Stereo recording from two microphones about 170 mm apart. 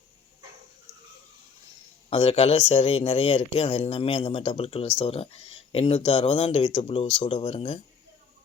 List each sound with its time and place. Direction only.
2.0 s speech: 35° left (ahead or behind)